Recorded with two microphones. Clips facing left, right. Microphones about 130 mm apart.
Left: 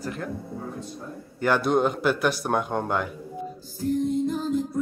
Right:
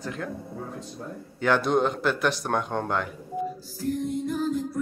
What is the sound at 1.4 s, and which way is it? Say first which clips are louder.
A man's voice: left 1 dB; 5° left (ahead or behind).